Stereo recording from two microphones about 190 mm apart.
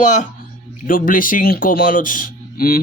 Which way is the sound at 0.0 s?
40° left (ahead or behind).